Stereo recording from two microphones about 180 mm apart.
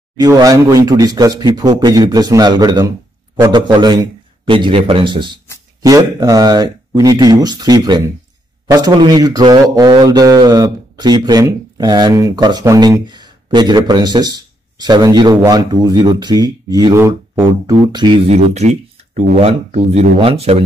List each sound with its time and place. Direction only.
0.2 s a man's voice: 20° right (ahead or behind); by 20.6 s 35° right (ahead or behind)